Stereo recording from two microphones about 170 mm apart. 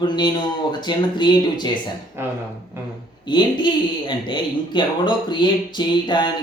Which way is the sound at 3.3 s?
25° left (ahead or behind).